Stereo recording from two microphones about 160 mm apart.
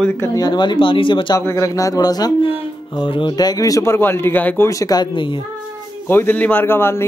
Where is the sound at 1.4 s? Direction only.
20° left (ahead or behind).